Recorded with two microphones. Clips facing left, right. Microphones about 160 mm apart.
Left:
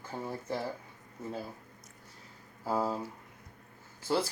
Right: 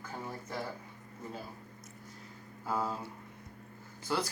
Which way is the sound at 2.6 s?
35° left (ahead or behind).